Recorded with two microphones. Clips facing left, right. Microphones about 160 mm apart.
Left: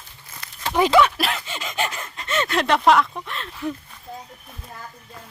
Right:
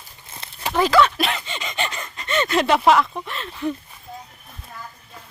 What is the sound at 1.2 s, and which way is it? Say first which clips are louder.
Speech: right 1 dB; centre (ahead or behind).